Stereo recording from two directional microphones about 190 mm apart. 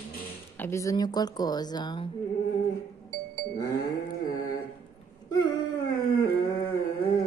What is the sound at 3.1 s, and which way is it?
Music, 45° right (ahead or behind).